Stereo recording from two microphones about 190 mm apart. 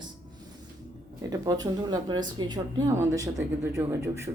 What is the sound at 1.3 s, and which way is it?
A man's voice, 20° right (ahead or behind).